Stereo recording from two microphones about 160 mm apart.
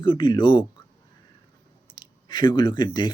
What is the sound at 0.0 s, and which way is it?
Speech, 30° left (ahead or behind).